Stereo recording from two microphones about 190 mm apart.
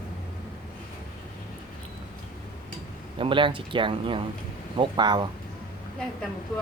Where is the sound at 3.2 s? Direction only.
25° right (ahead or behind).